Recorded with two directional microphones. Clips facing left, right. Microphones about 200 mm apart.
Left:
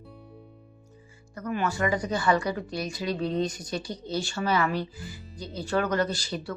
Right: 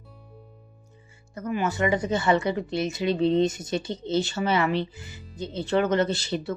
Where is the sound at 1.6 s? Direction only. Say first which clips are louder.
Right 3 dB; 20° right (ahead or behind).